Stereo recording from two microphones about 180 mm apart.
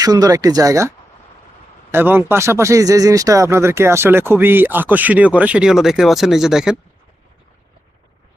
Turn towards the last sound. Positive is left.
turn(degrees=-5)  # may be behind; listen again after turning